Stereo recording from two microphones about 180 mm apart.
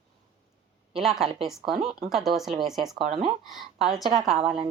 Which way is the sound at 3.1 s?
30° right (ahead or behind).